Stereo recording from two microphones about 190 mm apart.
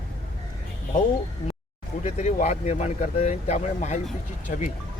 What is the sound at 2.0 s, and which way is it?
Speech, 35° left (ahead or behind).